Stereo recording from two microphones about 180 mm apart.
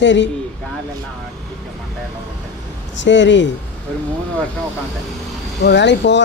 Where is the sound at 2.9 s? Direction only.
85° left.